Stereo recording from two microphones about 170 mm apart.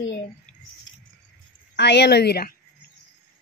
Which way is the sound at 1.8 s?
80° left.